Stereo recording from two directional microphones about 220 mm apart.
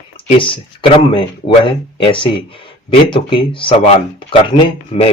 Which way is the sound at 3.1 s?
20° left (ahead or behind).